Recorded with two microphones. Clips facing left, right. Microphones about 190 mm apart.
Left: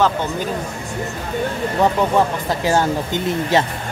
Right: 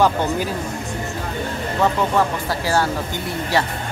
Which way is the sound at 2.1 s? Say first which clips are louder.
Left 2 dB; 20° left (ahead or behind).